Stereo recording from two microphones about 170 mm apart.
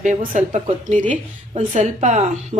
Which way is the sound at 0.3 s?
50° right (ahead or behind).